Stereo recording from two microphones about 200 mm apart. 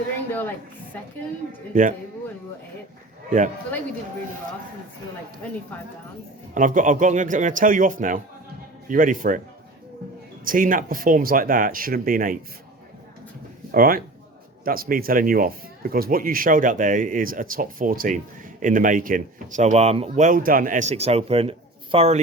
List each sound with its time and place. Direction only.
0.9 s a woman's voice: 10° left (ahead or behind)
1.7 s speech: 40° right (ahead or behind)
3.2 s speech: 40° right (ahead or behind)
6.5 s speech: 40° right (ahead or behind)
10.4 s speech: 45° right (ahead or behind)
13.7 s speech: 45° right (ahead or behind); by 22.2 s 30° right (ahead or behind)